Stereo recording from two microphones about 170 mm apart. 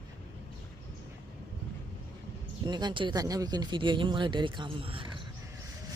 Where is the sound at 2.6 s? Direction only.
25° right (ahead or behind).